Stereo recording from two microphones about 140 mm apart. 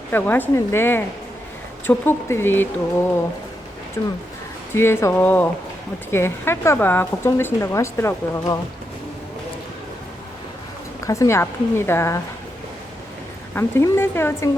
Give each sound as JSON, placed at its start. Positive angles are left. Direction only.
{"t": 0.1, "sound": "speech", "side_deg": 15}
{"t": 4.0, "sound": "a woman's voice", "side_deg": 20}
{"t": 11.0, "sound": "a woman's voice", "side_deg": 25}
{"t": 13.5, "sound": "speech", "side_deg": 15}